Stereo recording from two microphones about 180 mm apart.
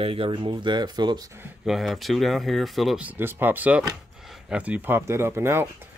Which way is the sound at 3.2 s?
10° right (ahead or behind).